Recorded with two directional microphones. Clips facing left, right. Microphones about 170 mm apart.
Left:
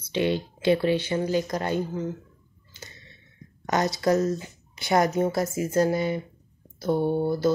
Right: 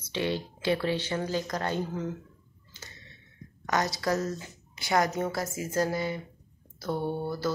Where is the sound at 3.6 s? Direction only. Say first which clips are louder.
Left 5 dB; 25° left (ahead or behind).